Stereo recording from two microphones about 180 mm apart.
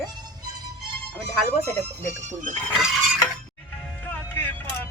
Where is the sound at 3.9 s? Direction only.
10° left (ahead or behind).